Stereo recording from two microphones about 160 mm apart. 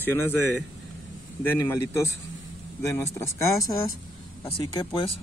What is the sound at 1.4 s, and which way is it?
A man's voice, 15° left (ahead or behind).